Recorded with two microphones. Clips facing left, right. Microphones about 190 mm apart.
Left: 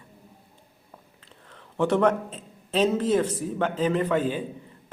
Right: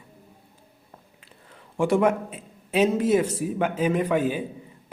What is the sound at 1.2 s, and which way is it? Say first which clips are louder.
A man's voice: even; 10° right (ahead or behind).